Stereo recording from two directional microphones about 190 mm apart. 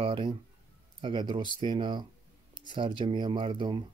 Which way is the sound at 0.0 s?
25° right (ahead or behind).